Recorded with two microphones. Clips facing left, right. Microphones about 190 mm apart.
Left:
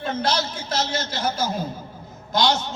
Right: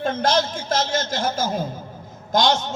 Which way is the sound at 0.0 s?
50° right (ahead or behind).